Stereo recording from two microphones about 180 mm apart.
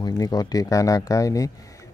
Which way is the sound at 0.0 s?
20° left (ahead or behind).